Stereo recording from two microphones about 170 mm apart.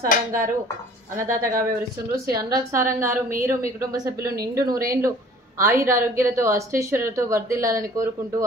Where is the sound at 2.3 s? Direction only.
15° right (ahead or behind).